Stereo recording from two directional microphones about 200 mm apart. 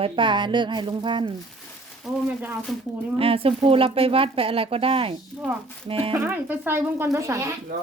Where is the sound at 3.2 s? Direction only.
30° right (ahead or behind).